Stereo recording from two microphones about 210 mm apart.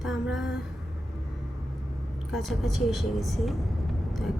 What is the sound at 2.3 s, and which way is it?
A woman's voice, centre (ahead or behind).